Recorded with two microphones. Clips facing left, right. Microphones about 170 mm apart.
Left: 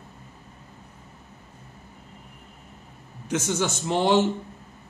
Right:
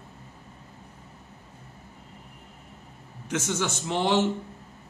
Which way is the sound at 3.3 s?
35° left (ahead or behind).